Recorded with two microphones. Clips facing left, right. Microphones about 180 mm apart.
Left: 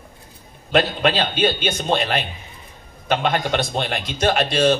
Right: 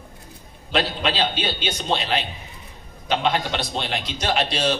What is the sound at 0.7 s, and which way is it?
A man's voice, 50° left (ahead or behind).